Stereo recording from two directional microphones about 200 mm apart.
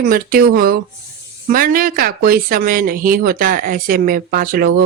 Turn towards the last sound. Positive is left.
turn(degrees=-45)  # may be behind; listen again after turning